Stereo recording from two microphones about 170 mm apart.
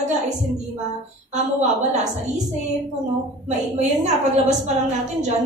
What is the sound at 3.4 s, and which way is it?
A woman's voice, 45° right (ahead or behind).